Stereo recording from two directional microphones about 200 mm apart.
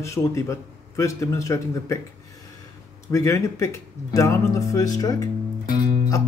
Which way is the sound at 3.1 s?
15° left (ahead or behind).